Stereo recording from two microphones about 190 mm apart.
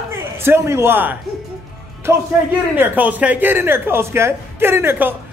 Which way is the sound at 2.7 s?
10° right (ahead or behind).